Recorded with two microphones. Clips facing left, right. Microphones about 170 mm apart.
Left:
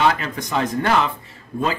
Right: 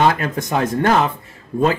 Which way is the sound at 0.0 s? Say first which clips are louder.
Right 3 dB; 50° right (ahead or behind).